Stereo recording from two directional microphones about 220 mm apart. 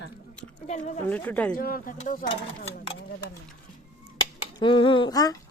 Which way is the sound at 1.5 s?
40° left (ahead or behind).